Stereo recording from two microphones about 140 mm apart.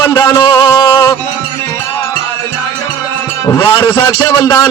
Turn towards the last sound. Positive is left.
turn(degrees=25)  # may be behind; listen again after turning